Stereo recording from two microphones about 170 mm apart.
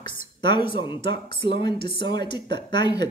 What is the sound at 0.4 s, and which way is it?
Speech, 30° left (ahead or behind).